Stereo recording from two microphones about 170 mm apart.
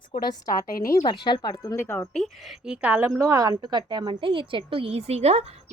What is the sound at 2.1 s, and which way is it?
A woman's voice, centre (ahead or behind).